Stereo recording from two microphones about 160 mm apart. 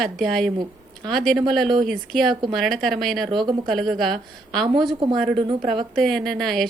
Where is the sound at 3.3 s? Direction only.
30° right (ahead or behind).